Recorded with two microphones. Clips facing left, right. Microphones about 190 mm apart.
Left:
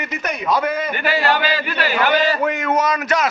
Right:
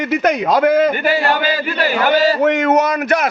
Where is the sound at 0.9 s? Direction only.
45° right (ahead or behind).